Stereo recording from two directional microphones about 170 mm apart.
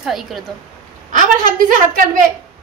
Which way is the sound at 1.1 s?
50° right (ahead or behind).